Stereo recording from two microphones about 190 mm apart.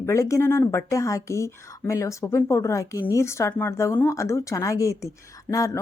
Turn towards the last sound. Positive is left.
turn(degrees=15)  # may be behind; listen again after turning